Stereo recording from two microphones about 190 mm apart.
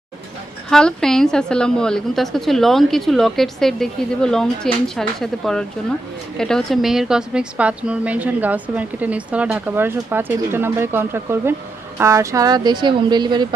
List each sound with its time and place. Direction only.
0.7 s a woman's voice: 5° left (ahead or behind); by 13.5 s 25° right (ahead or behind)